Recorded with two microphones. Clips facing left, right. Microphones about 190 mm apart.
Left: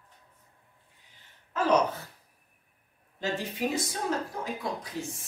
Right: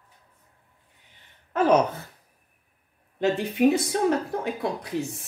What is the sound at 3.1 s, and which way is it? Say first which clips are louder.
Speech: right 9 dB; 60° right (ahead or behind).